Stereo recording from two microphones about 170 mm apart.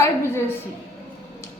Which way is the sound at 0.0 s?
15° left (ahead or behind).